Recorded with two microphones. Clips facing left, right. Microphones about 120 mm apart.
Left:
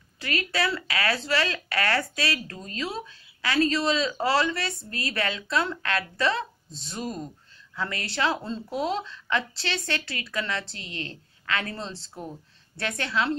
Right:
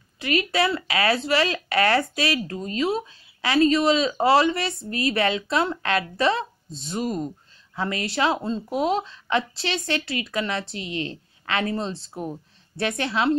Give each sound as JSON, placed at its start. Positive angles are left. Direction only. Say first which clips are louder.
{"t": 0.2, "sound": "speech", "louder": "right 5 dB", "side_deg": -20}